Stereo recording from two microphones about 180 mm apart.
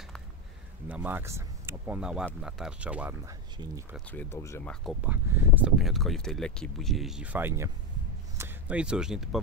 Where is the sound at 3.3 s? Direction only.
20° right (ahead or behind).